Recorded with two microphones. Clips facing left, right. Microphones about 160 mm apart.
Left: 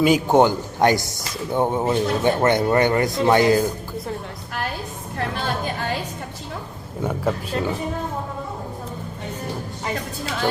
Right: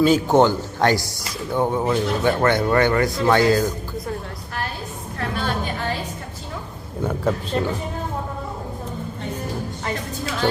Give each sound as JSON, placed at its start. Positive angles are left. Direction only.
{"t": 0.0, "sound": "a man's voice", "side_deg": 15}
{"t": 7.0, "sound": "speech", "side_deg": 5}